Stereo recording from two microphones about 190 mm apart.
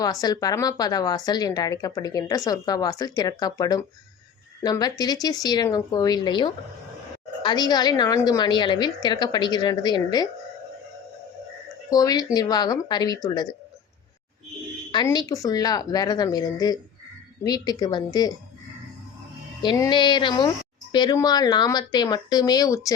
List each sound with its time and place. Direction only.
0.0 s a woman's voice: 20° left (ahead or behind)
11.9 s a woman's voice: 20° left (ahead or behind)
14.9 s a woman's voice: 20° left (ahead or behind)
19.6 s a woman's voice: 20° left (ahead or behind)